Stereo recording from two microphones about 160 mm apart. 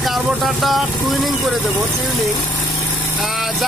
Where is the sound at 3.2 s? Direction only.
Centre (ahead or behind).